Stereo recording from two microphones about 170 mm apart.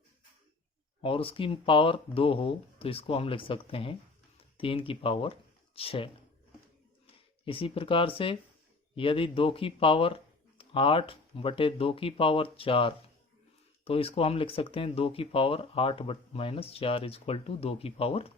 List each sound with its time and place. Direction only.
1.0 s speech: 35° left (ahead or behind)
7.4 s speech: 35° left (ahead or behind)